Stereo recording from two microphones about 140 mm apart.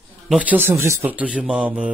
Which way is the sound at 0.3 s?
10° right (ahead or behind).